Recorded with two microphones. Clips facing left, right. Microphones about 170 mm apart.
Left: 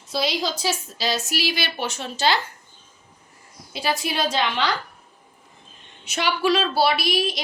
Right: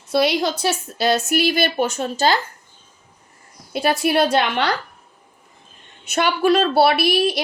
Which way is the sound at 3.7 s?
60° right (ahead or behind).